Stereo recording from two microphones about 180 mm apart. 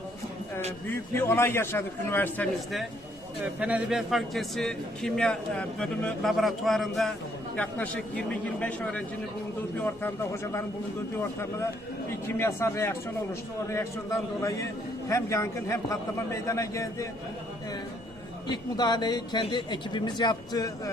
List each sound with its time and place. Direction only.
1.3 s a man's voice: 15° left (ahead or behind)
3.4 s a man's voice: 5° right (ahead or behind); by 10.6 s 15° left (ahead or behind)
12.4 s a man's voice: 15° left (ahead or behind)
18.4 s speech: 25° left (ahead or behind)